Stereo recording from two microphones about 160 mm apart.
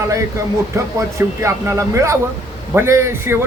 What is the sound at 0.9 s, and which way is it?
A man's voice, 20° right (ahead or behind).